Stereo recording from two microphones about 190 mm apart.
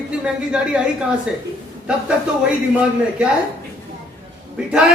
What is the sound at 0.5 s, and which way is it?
Speech, 5° right (ahead or behind).